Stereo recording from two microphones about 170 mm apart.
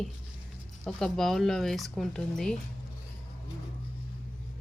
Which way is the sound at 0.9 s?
Centre (ahead or behind).